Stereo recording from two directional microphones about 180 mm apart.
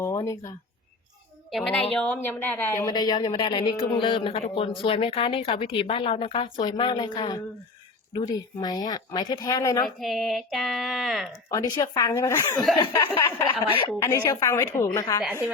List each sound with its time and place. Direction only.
0.0 s speech: 20° left (ahead or behind)
1.5 s a woman's voice: centre (ahead or behind); by 7.4 s 25° left (ahead or behind)
8.6 s a woman's voice: 25° left (ahead or behind)
9.8 s speech: centre (ahead or behind)
11.5 s a woman's voice: 20° left (ahead or behind)
14.0 s a woman's voice: 15° left (ahead or behind)